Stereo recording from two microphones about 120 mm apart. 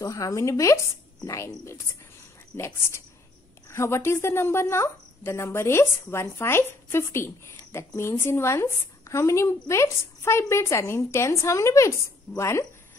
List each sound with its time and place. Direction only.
0.0 s a woman's voice: 25° left (ahead or behind)
2.5 s a woman's voice: 20° left (ahead or behind)